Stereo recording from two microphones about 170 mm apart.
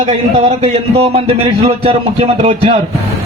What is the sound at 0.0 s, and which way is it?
Speech, 35° right (ahead or behind).